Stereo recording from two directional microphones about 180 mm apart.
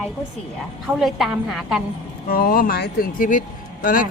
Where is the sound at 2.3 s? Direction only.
55° left (ahead or behind).